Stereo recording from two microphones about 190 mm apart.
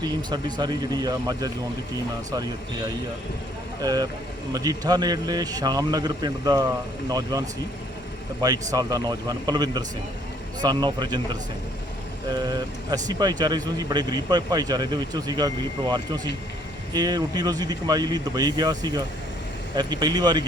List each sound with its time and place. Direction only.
0.0 s speech: 20° right (ahead or behind)
3.8 s speech: 20° right (ahead or behind)